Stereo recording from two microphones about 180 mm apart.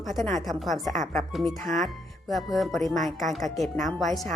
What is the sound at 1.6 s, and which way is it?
Speech, 45° right (ahead or behind).